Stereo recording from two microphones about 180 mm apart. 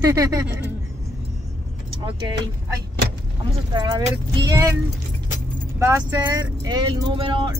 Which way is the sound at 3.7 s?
20° right (ahead or behind).